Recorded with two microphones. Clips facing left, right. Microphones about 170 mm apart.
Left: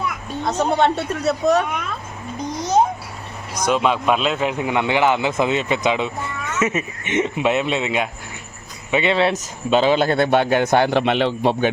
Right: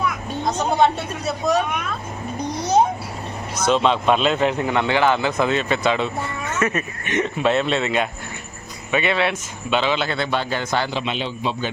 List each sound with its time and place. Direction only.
0.4 s a man's voice: 65° left (ahead or behind)
3.5 s a man's voice: 10° left (ahead or behind)
8.9 s a man's voice: 25° left (ahead or behind); by 11.7 s 65° left (ahead or behind)